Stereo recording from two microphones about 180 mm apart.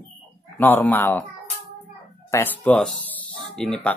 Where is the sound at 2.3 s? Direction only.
10° left (ahead or behind).